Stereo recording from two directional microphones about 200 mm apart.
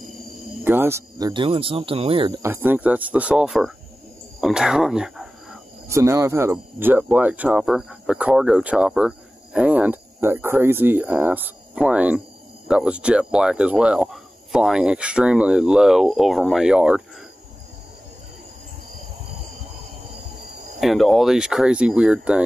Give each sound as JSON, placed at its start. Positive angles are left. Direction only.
{"t": 0.7, "sound": "speech", "side_deg": -10}
{"t": 2.4, "sound": "speech", "side_deg": -10}
{"t": 4.4, "sound": "cricket", "side_deg": -5}
{"t": 5.9, "sound": "speech", "side_deg": -15}
{"t": 20.8, "sound": "speech", "side_deg": 0}